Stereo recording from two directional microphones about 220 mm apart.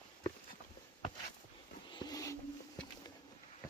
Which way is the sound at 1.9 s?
15° left (ahead or behind).